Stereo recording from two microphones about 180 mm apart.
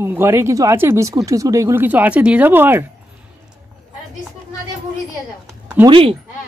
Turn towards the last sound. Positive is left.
turn(degrees=-30)  # may be behind; listen again after turning